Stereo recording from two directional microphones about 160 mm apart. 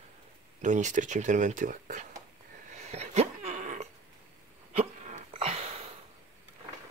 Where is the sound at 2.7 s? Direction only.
45° right (ahead or behind).